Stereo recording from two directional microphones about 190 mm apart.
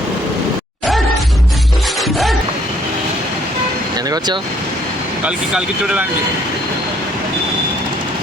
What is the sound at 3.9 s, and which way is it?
Vehicle, 20° right (ahead or behind).